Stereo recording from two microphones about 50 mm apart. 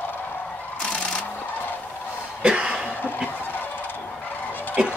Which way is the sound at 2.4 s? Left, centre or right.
Centre.